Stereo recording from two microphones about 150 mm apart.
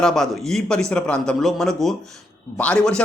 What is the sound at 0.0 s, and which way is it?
A man's voice, centre (ahead or behind).